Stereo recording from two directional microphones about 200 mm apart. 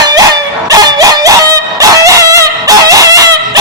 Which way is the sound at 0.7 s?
20° right (ahead or behind).